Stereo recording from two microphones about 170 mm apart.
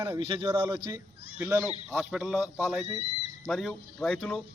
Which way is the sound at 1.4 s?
10° right (ahead or behind).